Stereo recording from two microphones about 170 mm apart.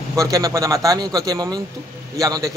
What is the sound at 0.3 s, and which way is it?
A man's voice, 20° right (ahead or behind).